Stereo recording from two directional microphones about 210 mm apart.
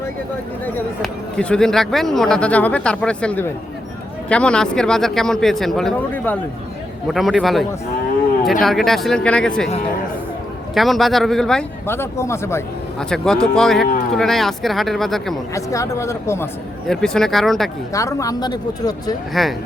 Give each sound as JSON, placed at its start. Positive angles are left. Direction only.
{"t": 0.6, "sound": "a man's voice", "side_deg": 5}
{"t": 10.8, "sound": "a man's voice", "side_deg": 0}
{"t": 13.8, "sound": "a sound", "side_deg": 40}
{"t": 14.1, "sound": "a man's voice", "side_deg": 0}
{"t": 15.5, "sound": "speech", "side_deg": 15}
{"t": 16.9, "sound": "a man's voice", "side_deg": 0}
{"t": 17.9, "sound": "speech", "side_deg": 15}
{"t": 19.3, "sound": "a man's voice", "side_deg": 0}